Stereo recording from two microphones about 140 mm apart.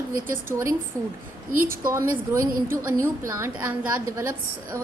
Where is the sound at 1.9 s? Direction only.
20° right (ahead or behind).